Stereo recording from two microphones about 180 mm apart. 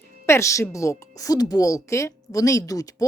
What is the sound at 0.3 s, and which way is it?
A woman's voice, 15° left (ahead or behind).